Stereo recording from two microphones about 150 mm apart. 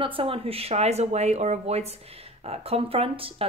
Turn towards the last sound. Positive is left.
turn(degrees=-40)  # may be behind; listen again after turning